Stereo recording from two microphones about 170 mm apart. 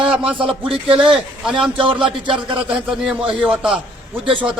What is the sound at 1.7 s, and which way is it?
Speech, 30° right (ahead or behind).